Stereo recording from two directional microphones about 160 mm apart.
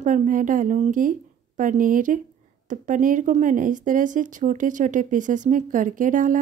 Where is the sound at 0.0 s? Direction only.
50° right (ahead or behind).